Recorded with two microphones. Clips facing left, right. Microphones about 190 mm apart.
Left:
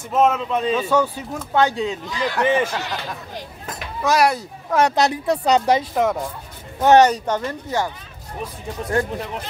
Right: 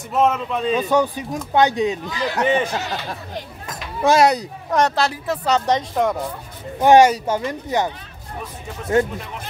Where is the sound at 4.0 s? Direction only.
25° right (ahead or behind).